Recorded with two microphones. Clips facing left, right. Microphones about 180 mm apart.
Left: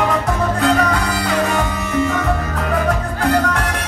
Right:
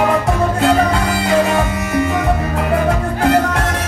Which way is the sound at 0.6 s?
25° right (ahead or behind).